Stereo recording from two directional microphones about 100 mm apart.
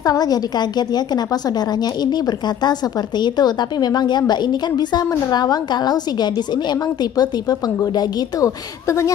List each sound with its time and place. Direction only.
0.0 s a woman's voice: 40° left (ahead or behind)